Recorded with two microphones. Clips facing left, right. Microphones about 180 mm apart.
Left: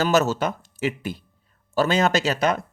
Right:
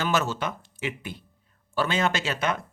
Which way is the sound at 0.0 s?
40° left (ahead or behind).